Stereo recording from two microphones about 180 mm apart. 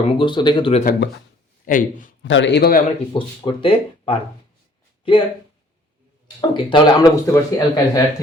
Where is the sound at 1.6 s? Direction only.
50° left (ahead or behind).